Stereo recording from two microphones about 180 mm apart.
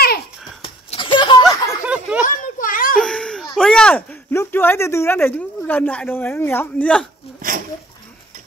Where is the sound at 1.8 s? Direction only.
10° right (ahead or behind).